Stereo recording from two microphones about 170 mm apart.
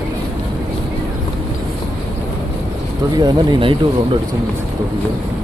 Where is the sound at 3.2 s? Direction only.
30° right (ahead or behind).